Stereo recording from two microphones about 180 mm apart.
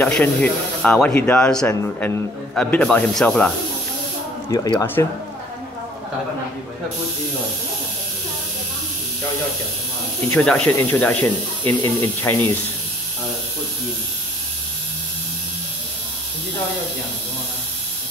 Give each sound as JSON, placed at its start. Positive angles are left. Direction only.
{"t": 0.0, "sound": "speech", "side_deg": 5}
{"t": 4.5, "sound": "speech", "side_deg": 20}
{"t": 10.3, "sound": "speech", "side_deg": 5}